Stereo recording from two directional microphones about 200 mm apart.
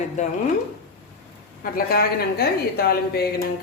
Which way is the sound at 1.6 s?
45° left (ahead or behind).